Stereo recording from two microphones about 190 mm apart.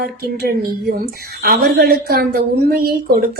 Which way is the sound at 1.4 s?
55° right (ahead or behind).